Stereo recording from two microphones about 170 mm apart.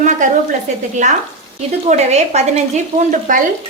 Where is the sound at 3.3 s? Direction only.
50° right (ahead or behind).